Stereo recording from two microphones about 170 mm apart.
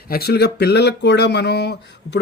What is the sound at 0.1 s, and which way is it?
Speech, 65° left (ahead or behind).